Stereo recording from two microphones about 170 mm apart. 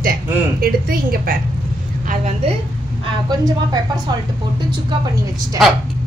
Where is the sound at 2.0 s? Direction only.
40° right (ahead or behind).